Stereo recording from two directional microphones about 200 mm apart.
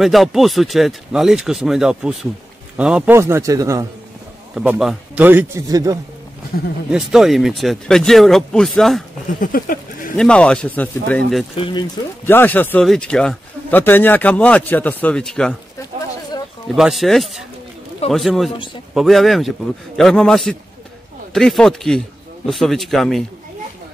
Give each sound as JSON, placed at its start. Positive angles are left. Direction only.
{"t": 0.0, "sound": "a man's voice", "side_deg": 0}
{"t": 4.6, "sound": "a man's voice", "side_deg": 0}
{"t": 6.9, "sound": "speech", "side_deg": 0}
{"t": 9.4, "sound": "speech", "side_deg": 45}
{"t": 10.1, "sound": "speech", "side_deg": 5}
{"t": 11.5, "sound": "speech", "side_deg": 25}
{"t": 12.3, "sound": "speech", "side_deg": 10}
{"t": 16.6, "sound": "speech", "side_deg": 0}